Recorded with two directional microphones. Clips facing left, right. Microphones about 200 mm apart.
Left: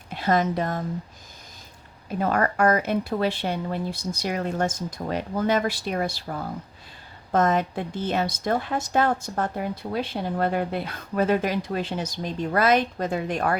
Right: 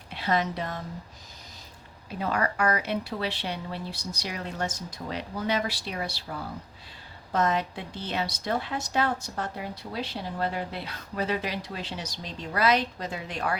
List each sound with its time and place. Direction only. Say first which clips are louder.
0.1 s a woman's voice: left 5 dB; 45° left (ahead or behind)
2.0 s a woman's voice: left 5 dB; 50° left (ahead or behind)